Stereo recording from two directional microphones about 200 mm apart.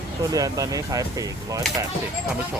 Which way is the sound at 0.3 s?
15° right (ahead or behind).